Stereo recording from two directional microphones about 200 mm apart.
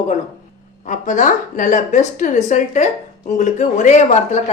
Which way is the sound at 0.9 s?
40° left (ahead or behind).